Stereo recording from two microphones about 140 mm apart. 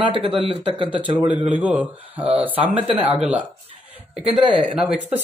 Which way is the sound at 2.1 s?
45° right (ahead or behind).